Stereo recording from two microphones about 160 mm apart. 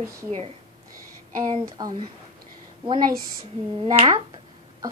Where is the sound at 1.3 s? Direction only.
25° right (ahead or behind).